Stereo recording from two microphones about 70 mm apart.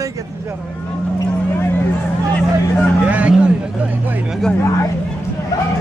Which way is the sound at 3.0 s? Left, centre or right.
Centre.